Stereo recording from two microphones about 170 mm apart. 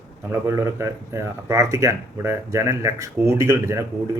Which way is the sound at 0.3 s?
15° right (ahead or behind).